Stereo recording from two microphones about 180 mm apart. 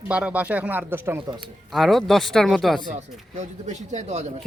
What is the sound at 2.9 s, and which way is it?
Speech, 40° right (ahead or behind).